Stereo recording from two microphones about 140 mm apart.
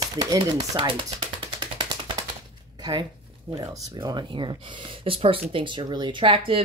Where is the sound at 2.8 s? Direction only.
30° right (ahead or behind).